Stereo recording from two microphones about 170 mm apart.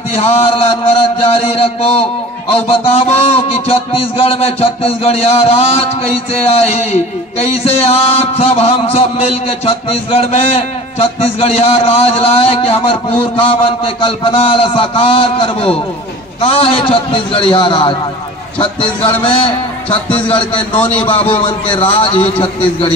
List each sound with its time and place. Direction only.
0.1 s a man's voice: 40° left (ahead or behind)